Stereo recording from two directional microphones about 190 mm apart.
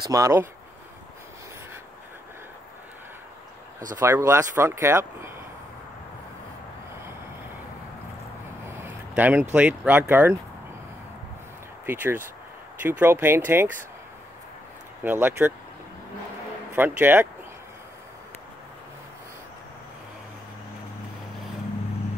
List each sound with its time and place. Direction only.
0.0 s speech: 20° right (ahead or behind)
3.9 s speech: 15° right (ahead or behind)
8.6 s speech: 10° right (ahead or behind)
11.8 s speech: 10° right (ahead or behind)
15.0 s speech: 10° right (ahead or behind)
16.7 s speech: 10° right (ahead or behind)